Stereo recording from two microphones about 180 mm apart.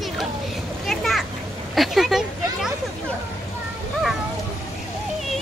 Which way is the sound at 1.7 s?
Centre (ahead or behind).